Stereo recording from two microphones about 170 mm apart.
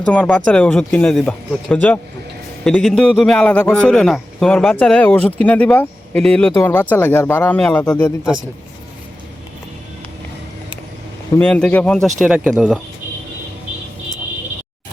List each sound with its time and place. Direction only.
0.0 s a man's voice: 5° left (ahead or behind)
11.3 s a man's voice: 10° left (ahead or behind)